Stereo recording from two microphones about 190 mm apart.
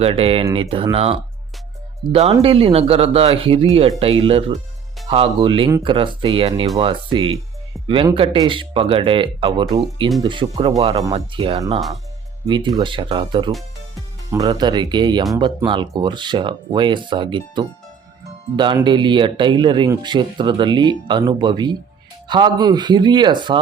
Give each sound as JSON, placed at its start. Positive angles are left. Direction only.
{"t": 0.0, "sound": "speech", "side_deg": -30}